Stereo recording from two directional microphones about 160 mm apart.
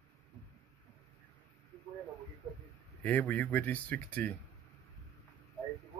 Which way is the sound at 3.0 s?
10° left (ahead or behind).